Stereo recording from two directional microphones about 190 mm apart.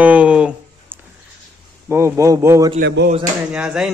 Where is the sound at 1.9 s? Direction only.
15° right (ahead or behind).